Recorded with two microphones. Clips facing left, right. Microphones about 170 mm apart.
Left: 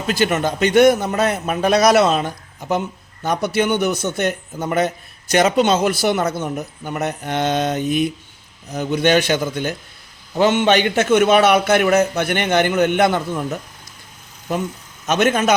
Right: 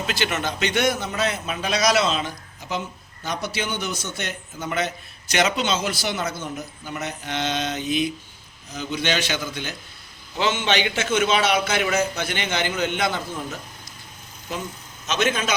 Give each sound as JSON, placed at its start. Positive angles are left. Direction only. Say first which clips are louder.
{"t": 0.1, "sound": "a man's voice", "louder": "left 10 dB", "side_deg": 45}
{"t": 15.0, "sound": "a man's voice", "louder": "left 7 dB", "side_deg": 55}